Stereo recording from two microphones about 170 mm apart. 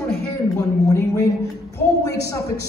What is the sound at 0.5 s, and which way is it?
Speech, 20° left (ahead or behind).